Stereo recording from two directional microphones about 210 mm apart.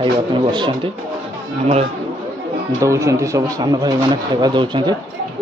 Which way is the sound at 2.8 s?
15° right (ahead or behind).